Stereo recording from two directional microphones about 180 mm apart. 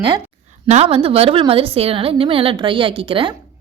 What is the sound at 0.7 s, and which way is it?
A woman's voice, 35° right (ahead or behind).